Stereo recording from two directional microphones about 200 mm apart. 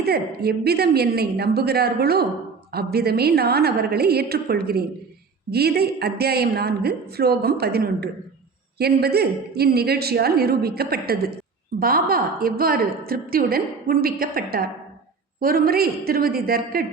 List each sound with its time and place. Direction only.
0.0 s a woman's voice: 50° right (ahead or behind)